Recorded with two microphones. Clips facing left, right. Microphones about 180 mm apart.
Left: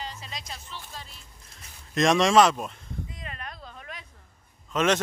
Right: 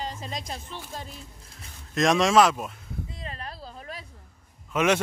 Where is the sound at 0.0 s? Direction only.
45° right (ahead or behind).